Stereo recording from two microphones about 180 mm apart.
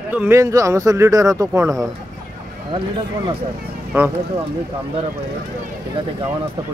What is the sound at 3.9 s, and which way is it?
Speech, 15° right (ahead or behind).